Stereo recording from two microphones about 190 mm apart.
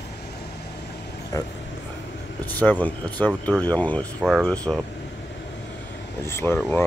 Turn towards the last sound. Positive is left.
turn(degrees=10)  # may be behind; listen again after turning